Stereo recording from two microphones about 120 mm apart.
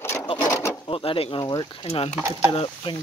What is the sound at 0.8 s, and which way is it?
Speech, 50° left (ahead or behind).